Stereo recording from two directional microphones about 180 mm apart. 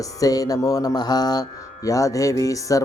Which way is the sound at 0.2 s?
20° left (ahead or behind).